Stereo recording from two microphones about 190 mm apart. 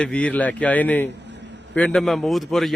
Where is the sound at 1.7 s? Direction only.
5° left (ahead or behind).